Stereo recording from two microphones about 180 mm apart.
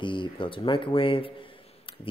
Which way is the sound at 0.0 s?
25° left (ahead or behind).